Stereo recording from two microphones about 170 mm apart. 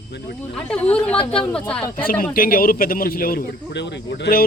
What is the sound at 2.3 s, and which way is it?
Speech, 60° left (ahead or behind).